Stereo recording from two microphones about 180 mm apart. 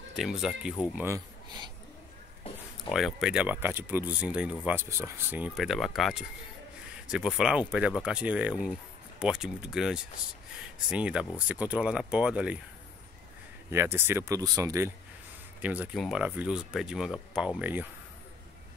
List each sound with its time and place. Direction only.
0.1 s speech: centre (ahead or behind)
0.9 s speech: 15° right (ahead or behind)
2.9 s speech: centre (ahead or behind)
13.7 s speech: 15° right (ahead or behind)